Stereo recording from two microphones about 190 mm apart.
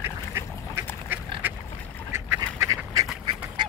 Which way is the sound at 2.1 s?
15° right (ahead or behind).